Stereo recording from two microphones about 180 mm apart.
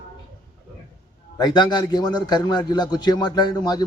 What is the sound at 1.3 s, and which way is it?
A man's voice, 25° left (ahead or behind).